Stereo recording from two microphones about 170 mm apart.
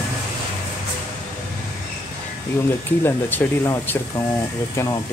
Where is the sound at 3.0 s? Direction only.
15° left (ahead or behind).